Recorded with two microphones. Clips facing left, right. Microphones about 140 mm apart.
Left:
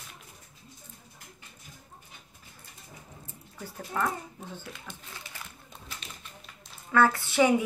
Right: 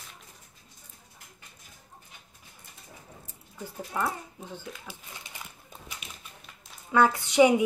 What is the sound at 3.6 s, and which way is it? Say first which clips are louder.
Speech: even; 15° right (ahead or behind).